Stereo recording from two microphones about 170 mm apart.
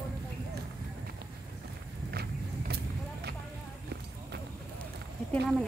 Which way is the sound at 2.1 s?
70° right (ahead or behind).